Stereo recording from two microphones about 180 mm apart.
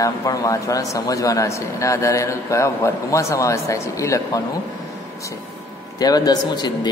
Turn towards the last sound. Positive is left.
turn(degrees=25)  # may be behind; listen again after turning